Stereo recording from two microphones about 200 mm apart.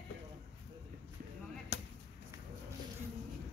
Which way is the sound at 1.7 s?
60° left (ahead or behind).